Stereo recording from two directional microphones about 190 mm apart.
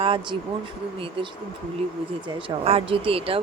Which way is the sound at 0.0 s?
25° right (ahead or behind).